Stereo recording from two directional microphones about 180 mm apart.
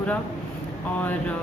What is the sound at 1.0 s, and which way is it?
Speech, 10° left (ahead or behind).